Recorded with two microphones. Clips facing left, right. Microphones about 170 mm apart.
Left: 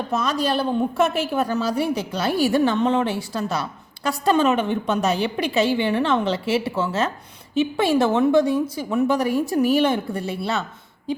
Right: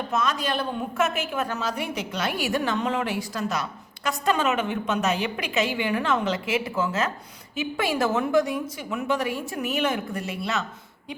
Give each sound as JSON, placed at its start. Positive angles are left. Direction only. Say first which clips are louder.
{"t": 0.1, "sound": "a woman's voice", "louder": "left 4 dB", "side_deg": 35}